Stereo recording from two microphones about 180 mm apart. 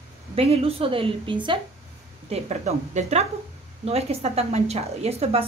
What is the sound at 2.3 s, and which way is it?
A woman's voice, 40° right (ahead or behind).